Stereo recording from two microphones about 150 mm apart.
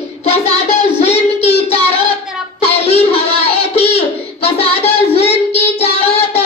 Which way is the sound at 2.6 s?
40° left (ahead or behind).